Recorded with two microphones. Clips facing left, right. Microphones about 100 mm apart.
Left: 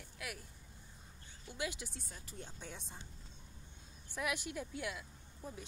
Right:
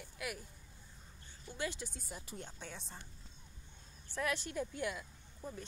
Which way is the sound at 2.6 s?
10° left (ahead or behind).